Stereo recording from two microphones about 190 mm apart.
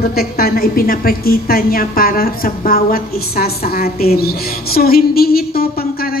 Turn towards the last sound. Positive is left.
turn(degrees=50)  # may be behind; listen again after turning